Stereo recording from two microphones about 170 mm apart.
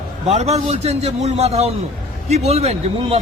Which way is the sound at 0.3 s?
40° right (ahead or behind).